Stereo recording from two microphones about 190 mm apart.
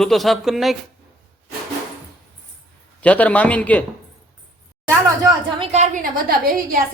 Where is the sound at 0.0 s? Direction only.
Centre (ahead or behind).